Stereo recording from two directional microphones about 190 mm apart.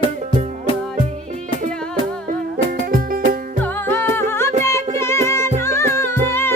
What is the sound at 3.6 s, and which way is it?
Music, 10° left (ahead or behind).